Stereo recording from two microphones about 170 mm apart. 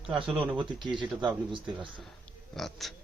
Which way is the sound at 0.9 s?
25° right (ahead or behind).